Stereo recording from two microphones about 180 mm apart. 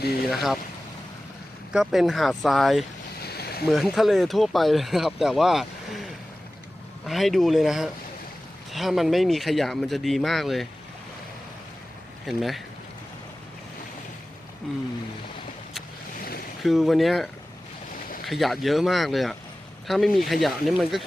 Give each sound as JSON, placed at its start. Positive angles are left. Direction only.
{"t": 1.7, "sound": "speech", "side_deg": 0}
{"t": 3.2, "sound": "boat", "side_deg": 60}
{"t": 3.7, "sound": "speech", "side_deg": 0}
{"t": 12.2, "sound": "speech", "side_deg": 0}
{"t": 16.6, "sound": "speech", "side_deg": 0}
{"t": 18.3, "sound": "speech", "side_deg": 0}